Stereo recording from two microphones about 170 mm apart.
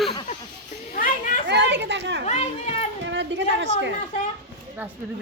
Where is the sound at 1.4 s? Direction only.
90° right.